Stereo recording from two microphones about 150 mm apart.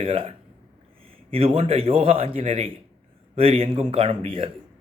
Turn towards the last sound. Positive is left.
turn(degrees=-40)  # may be behind; listen again after turning